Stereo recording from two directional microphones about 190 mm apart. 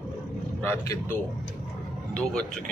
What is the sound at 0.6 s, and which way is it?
Speech, 10° left (ahead or behind).